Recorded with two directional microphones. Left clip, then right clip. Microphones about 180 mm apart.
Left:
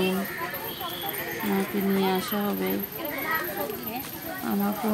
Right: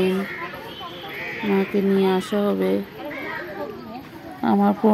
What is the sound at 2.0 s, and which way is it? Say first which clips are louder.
Speech: right 6 dB; 10° right (ahead or behind).